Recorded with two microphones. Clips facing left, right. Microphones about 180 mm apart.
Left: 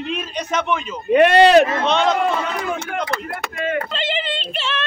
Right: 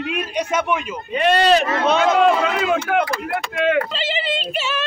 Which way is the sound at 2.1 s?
90° right.